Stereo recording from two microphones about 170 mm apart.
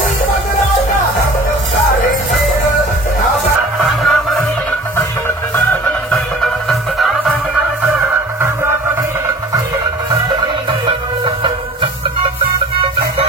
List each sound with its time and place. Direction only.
3.8 s music: centre (ahead or behind)
5.7 s music: 15° left (ahead or behind)
6.4 s music: centre (ahead or behind)
10.4 s music: 30° right (ahead or behind)